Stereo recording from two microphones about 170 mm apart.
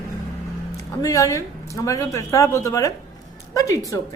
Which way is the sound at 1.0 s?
20° left (ahead or behind).